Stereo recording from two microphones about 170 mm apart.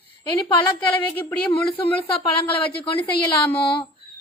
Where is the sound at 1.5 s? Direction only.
30° left (ahead or behind).